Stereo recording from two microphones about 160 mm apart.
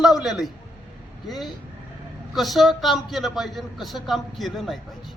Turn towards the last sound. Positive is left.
turn(degrees=0)  # may be behind; listen again after turning